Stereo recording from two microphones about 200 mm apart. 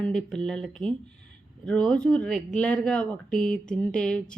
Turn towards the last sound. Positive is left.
turn(degrees=5)  # may be behind; listen again after turning